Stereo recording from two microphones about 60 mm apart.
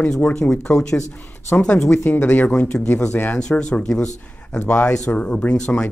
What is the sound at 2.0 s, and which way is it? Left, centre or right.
Speech, left.